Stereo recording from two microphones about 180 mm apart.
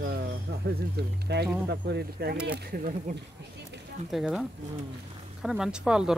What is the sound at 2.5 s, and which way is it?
Speech, 50° right (ahead or behind).